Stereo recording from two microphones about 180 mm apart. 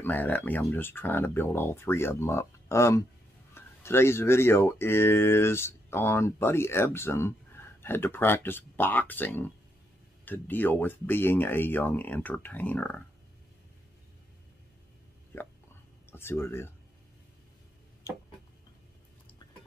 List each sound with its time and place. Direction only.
0.0 s speech: 10° left (ahead or behind)
15.3 s speech: 10° left (ahead or behind)